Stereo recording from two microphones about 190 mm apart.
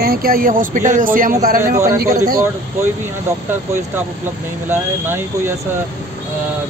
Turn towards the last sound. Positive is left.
turn(degrees=-10)  # may be behind; listen again after turning